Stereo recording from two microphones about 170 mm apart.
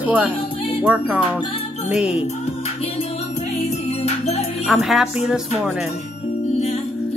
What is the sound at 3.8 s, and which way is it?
Music, 40° left (ahead or behind).